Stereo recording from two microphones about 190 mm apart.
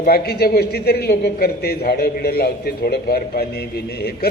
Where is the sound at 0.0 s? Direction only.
55° left (ahead or behind).